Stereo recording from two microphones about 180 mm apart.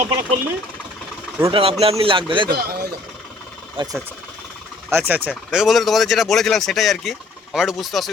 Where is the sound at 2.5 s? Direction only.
60° right (ahead or behind).